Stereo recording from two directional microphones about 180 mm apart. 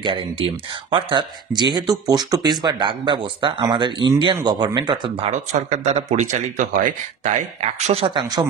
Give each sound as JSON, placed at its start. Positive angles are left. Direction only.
{"t": 0.0, "sound": "speech", "side_deg": -25}